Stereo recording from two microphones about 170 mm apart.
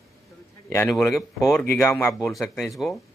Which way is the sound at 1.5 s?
15° left (ahead or behind).